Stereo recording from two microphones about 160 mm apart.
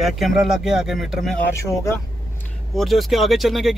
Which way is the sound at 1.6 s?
15° left (ahead or behind).